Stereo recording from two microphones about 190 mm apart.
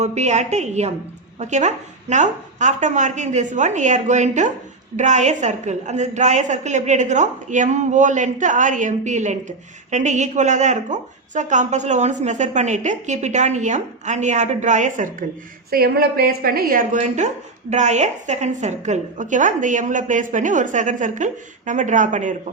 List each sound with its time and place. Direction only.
0.0 s a woman's voice: 35° right (ahead or behind)
15.7 s a woman's voice: 50° right (ahead or behind)